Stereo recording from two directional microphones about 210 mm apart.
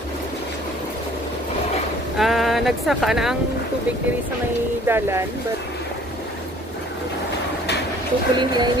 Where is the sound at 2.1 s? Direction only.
Centre (ahead or behind).